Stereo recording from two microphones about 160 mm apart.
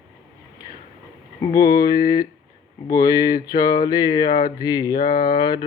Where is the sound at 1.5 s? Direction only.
25° left (ahead or behind).